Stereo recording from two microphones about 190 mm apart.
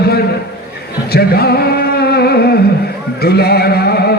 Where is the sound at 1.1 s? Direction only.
55° left (ahead or behind).